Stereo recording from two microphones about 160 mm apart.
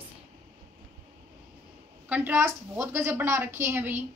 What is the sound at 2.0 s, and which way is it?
A woman's voice, 10° right (ahead or behind).